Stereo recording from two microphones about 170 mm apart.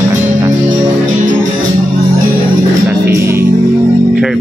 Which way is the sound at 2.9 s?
15° right (ahead or behind).